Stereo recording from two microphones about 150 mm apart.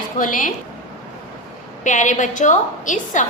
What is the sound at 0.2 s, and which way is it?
Speech, 60° left (ahead or behind).